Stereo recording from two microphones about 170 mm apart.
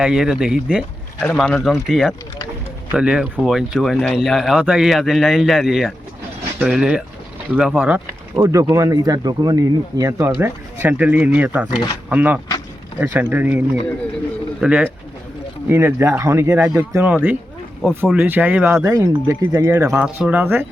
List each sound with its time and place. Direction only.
0.0 s speech: 5° right (ahead or behind)
14.6 s speech: 5° right (ahead or behind)